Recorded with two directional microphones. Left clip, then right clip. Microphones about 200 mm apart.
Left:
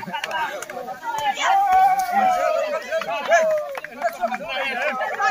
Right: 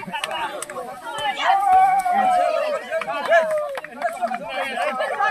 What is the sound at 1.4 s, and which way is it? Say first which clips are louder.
Dog: right 1 dB; 10° left (ahead or behind).